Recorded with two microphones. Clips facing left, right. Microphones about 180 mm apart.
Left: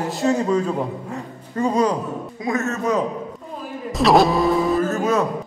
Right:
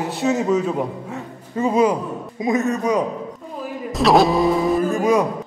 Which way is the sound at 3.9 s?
Centre (ahead or behind).